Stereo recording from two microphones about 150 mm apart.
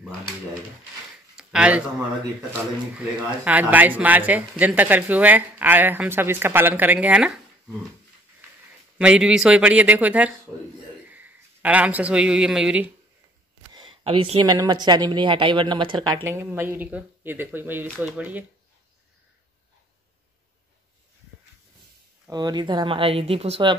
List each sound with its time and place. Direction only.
1.3 s a sound: 5° right (ahead or behind)
3.4 s speech: 10° right (ahead or behind)
8.9 s speech: 5° right (ahead or behind)
13.7 s a sound: 35° right (ahead or behind)
14.5 s speech: 25° right (ahead or behind); by 18.4 s 10° right (ahead or behind)
22.2 s speech: 25° right (ahead or behind)